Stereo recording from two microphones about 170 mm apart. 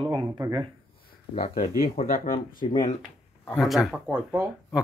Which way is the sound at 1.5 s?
60° left (ahead or behind).